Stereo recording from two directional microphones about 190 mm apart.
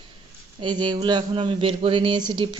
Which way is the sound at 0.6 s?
25° right (ahead or behind).